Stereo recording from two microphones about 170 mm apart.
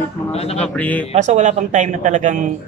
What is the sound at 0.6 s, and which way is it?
Speech, 10° left (ahead or behind).